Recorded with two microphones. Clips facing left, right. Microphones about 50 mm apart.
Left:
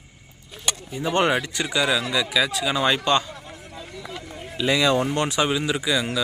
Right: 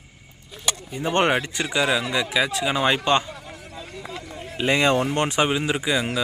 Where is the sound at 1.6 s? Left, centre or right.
Centre.